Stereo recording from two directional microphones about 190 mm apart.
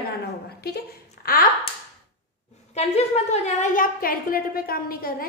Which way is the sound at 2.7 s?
35° left (ahead or behind).